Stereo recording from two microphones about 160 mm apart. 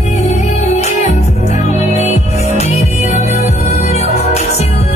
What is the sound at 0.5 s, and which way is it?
Music, 45° left (ahead or behind).